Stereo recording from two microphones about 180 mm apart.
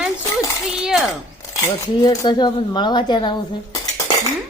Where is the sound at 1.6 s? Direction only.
20° left (ahead or behind).